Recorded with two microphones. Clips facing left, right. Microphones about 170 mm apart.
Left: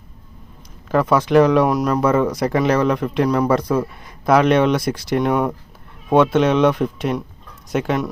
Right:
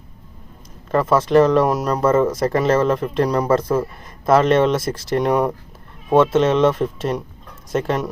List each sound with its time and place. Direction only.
0.9 s speech: centre (ahead or behind)